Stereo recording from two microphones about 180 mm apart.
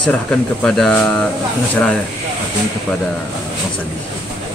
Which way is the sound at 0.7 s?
5° left (ahead or behind).